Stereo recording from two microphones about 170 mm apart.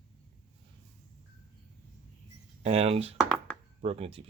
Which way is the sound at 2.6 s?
35° right (ahead or behind).